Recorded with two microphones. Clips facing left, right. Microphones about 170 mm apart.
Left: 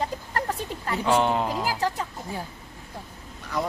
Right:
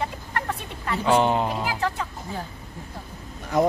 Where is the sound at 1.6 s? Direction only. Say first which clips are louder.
Even; 35° left (ahead or behind).